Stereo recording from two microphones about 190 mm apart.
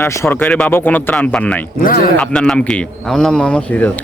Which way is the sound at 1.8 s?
50° left (ahead or behind).